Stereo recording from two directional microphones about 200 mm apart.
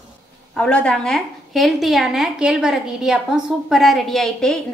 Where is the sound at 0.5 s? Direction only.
5° left (ahead or behind).